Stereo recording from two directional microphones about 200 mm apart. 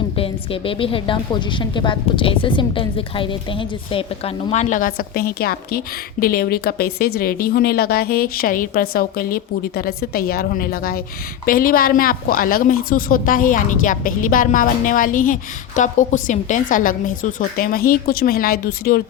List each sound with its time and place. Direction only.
0.2 s a woman's voice: 25° left (ahead or behind)
4.5 s a woman's voice: 40° left (ahead or behind)